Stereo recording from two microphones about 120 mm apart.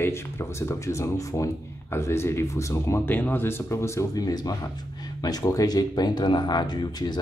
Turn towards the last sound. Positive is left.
turn(degrees=35)  # may be behind; listen again after turning